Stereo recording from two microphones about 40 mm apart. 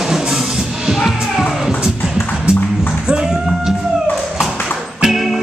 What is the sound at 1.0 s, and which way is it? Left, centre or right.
Music, centre.